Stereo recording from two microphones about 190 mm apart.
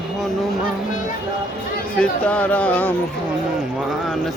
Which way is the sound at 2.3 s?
10° left (ahead or behind).